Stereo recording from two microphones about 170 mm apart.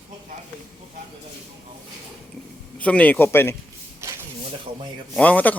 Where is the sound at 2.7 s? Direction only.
10° left (ahead or behind).